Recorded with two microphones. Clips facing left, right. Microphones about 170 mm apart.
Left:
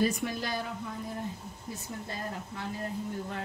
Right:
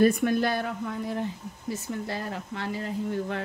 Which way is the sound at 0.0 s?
55° right (ahead or behind).